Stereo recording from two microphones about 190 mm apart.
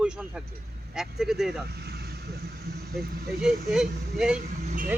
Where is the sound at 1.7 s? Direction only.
55° right (ahead or behind).